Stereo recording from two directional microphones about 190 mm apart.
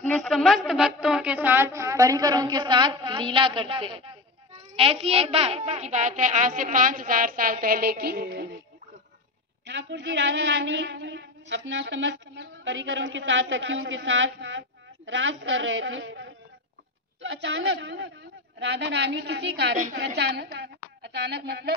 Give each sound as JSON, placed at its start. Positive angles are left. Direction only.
{"t": 0.0, "sound": "a woman's voice", "side_deg": 5}
{"t": 9.7, "sound": "a woman's voice", "side_deg": -70}